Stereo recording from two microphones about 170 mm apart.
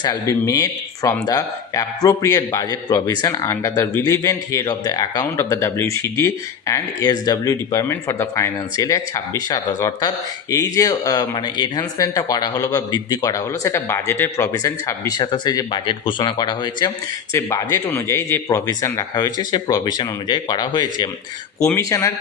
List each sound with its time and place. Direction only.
0.0 s speech: 20° left (ahead or behind)